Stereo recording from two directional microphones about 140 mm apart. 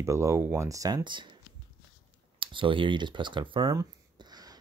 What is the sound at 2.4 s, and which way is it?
Speech, 35° right (ahead or behind).